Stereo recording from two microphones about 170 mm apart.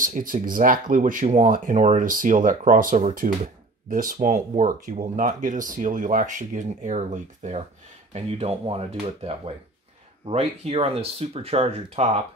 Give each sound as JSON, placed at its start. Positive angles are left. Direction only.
{"t": 0.0, "sound": "speech", "side_deg": -55}